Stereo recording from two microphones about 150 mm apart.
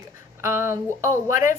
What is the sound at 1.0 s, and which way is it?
Speech, 20° right (ahead or behind).